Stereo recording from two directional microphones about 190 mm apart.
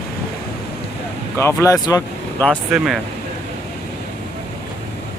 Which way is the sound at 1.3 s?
15° left (ahead or behind).